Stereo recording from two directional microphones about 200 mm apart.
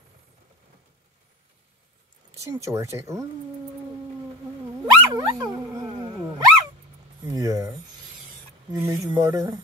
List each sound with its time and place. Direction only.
2.3 s speech: 15° right (ahead or behind)
4.8 s dog: 20° right (ahead or behind)
7.2 s speech: 15° right (ahead or behind)
8.8 s speech: 15° right (ahead or behind)